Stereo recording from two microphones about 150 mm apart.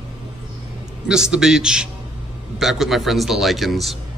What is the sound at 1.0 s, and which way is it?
A man's voice, 5° right (ahead or behind).